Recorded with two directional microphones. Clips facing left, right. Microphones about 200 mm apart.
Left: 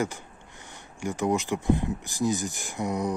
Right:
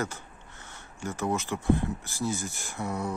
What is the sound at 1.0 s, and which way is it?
Speech, 15° left (ahead or behind).